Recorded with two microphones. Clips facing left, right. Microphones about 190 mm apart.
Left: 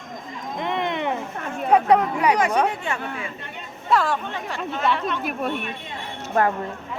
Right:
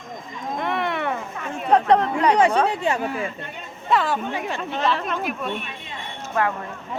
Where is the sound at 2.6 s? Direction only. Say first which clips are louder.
Right 4 dB; 35° right (ahead or behind).